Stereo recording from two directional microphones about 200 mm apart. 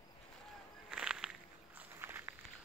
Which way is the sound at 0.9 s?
5° right (ahead or behind).